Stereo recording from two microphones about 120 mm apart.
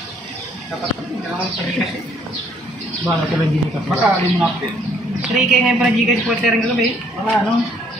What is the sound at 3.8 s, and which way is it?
A man's voice, 5° right (ahead or behind).